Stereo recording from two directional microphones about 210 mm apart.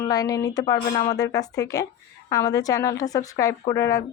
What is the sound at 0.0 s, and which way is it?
Speech, 15° left (ahead or behind).